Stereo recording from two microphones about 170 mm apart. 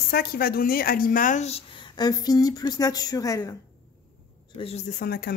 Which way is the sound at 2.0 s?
25° left (ahead or behind).